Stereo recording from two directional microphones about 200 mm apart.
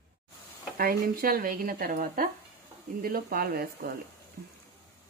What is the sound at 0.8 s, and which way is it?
Speech, 45° right (ahead or behind).